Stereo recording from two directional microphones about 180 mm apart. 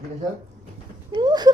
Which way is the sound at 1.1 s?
25° right (ahead or behind).